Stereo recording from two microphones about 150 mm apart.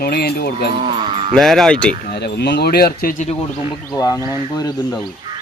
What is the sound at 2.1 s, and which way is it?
Speech, 90° left.